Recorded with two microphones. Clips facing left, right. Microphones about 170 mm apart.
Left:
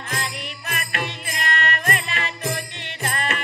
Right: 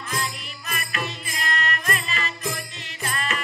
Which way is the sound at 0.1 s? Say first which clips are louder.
Left 1 dB; 65° left (ahead or behind).